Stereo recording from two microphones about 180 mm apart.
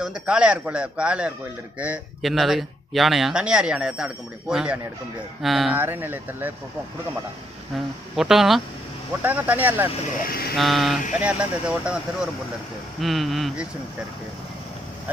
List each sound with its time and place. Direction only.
0.0 s speech: 5° right (ahead or behind)
5.8 s speech: 10° right (ahead or behind)
7.7 s speech: centre (ahead or behind)
10.2 s speech: 55° left (ahead or behind)
10.5 s speech: centre (ahead or behind)